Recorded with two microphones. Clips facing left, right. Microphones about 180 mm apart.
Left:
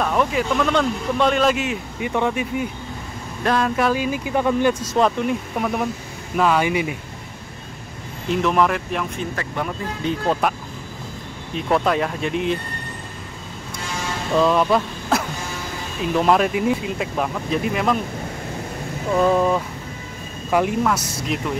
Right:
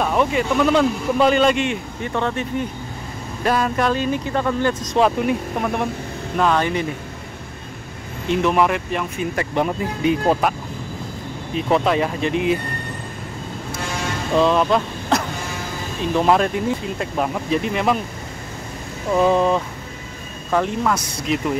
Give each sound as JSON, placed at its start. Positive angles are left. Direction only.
{"t": 0.0, "sound": "speech", "side_deg": -5}
{"t": 3.4, "sound": "speech", "side_deg": -5}
{"t": 4.9, "sound": "speech", "side_deg": 0}
{"t": 8.3, "sound": "speech", "side_deg": 0}
{"t": 9.3, "sound": "speech", "side_deg": -20}
{"t": 11.5, "sound": "speech", "side_deg": 0}
{"t": 14.3, "sound": "a sound", "side_deg": 0}
{"t": 16.0, "sound": "speech", "side_deg": 0}
{"t": 19.2, "sound": "speech", "side_deg": 0}
{"t": 20.8, "sound": "speech", "side_deg": 0}